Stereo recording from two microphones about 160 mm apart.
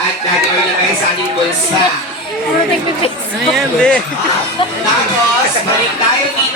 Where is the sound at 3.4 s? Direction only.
5° left (ahead or behind).